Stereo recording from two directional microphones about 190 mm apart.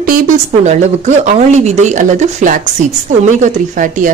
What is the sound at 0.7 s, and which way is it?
Speech, 35° right (ahead or behind).